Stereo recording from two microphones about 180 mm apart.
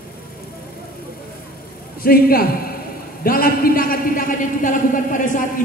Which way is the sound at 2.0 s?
55° left (ahead or behind).